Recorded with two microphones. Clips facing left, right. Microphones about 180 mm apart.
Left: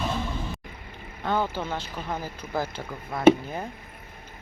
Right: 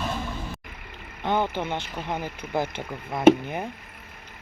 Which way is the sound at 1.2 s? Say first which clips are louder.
Right 2 dB; 20° right (ahead or behind).